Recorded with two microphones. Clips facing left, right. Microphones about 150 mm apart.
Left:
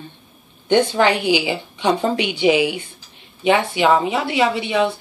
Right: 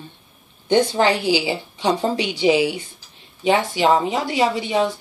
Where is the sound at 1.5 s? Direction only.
35° right (ahead or behind).